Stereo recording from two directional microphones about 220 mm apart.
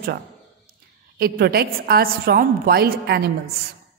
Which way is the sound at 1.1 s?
45° right (ahead or behind).